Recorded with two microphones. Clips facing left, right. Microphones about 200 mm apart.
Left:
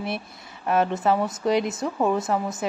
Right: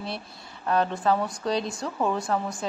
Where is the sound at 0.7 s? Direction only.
20° left (ahead or behind).